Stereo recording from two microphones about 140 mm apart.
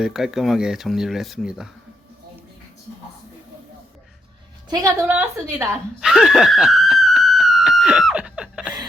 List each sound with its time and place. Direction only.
0.0 s speech: 5° right (ahead or behind)
4.7 s a woman's voice: 25° right (ahead or behind)
6.0 s a sound: 5° right (ahead or behind)